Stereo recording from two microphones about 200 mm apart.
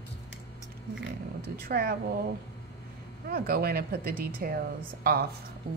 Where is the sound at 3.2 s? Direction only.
50° right (ahead or behind).